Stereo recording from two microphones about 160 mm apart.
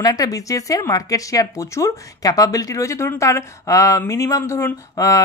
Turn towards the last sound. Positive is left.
turn(degrees=20)  # may be behind; listen again after turning